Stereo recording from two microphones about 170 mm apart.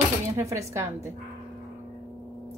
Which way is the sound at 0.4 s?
15° right (ahead or behind).